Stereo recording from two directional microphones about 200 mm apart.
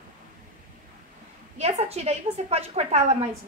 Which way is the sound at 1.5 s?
30° right (ahead or behind).